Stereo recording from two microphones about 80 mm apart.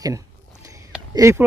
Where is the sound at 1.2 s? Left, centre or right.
Right.